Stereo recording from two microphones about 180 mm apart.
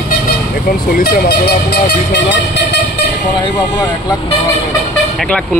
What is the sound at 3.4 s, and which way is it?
Speech, 25° left (ahead or behind).